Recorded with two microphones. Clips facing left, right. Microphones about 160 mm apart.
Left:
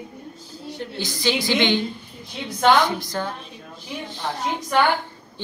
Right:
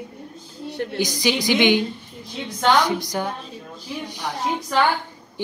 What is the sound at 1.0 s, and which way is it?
A woman's voice, 15° right (ahead or behind).